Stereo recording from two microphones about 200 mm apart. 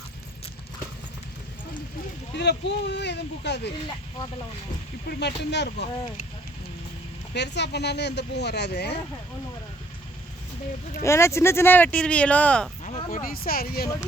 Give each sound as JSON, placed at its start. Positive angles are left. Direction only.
{"t": 2.3, "sound": "speech", "side_deg": 60}
{"t": 5.4, "sound": "speech", "side_deg": 60}
{"t": 7.3, "sound": "speech", "side_deg": 60}
{"t": 11.0, "sound": "speech", "side_deg": 15}
{"t": 12.8, "sound": "a sound", "side_deg": 30}
{"t": 13.1, "sound": "speech", "side_deg": 45}